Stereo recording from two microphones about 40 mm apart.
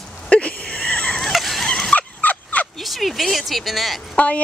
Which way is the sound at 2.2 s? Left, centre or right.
Left.